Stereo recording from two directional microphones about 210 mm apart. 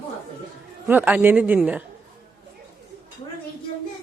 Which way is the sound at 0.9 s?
10° right (ahead or behind).